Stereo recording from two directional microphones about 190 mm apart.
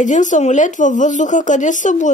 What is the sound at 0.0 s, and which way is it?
Speech, 40° left (ahead or behind).